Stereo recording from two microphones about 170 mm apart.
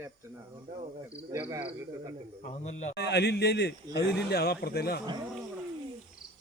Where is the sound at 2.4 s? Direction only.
40° left (ahead or behind).